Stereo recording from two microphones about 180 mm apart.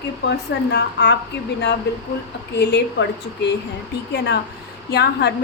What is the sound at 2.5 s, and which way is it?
Speech, 70° left (ahead or behind).